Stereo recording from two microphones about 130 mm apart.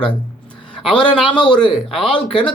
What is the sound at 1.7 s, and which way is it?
Speech, 40° left (ahead or behind).